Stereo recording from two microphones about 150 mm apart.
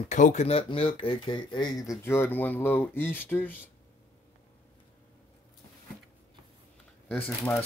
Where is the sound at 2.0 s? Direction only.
15° left (ahead or behind).